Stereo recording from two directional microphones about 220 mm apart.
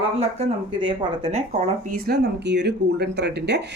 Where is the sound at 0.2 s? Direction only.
25° right (ahead or behind).